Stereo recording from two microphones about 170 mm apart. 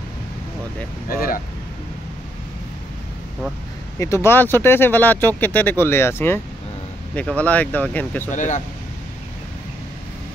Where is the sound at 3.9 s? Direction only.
15° left (ahead or behind).